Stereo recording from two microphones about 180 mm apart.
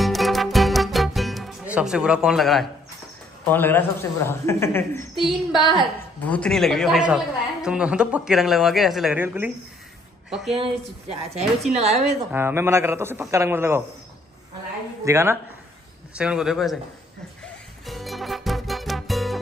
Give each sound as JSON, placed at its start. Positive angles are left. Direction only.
{"t": 0.0, "sound": "music", "side_deg": 0}
{"t": 3.4, "sound": "a man's voice", "side_deg": 10}
{"t": 5.1, "sound": "a woman's voice", "side_deg": 0}
{"t": 11.7, "sound": "speech", "side_deg": -35}
{"t": 12.3, "sound": "a man's voice", "side_deg": -10}
{"t": 15.0, "sound": "a man's voice", "side_deg": -15}
{"t": 17.8, "sound": "music", "side_deg": 0}